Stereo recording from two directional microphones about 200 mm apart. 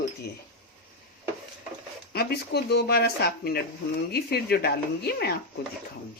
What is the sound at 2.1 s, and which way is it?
Speech, 55° left (ahead or behind).